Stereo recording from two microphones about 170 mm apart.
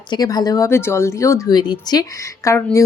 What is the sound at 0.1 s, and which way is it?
Speech, 25° left (ahead or behind).